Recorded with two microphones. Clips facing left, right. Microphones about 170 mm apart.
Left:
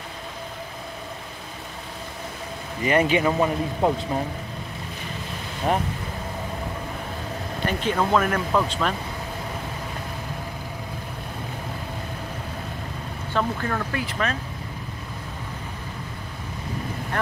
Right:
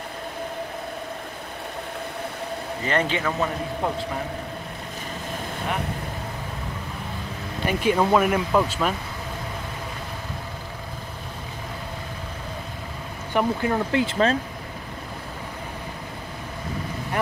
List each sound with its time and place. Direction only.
2.8 s speech: 10° left (ahead or behind)
7.6 s speech: 10° right (ahead or behind)
13.3 s speech: 15° right (ahead or behind)